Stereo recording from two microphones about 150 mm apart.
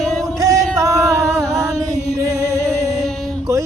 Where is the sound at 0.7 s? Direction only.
20° right (ahead or behind).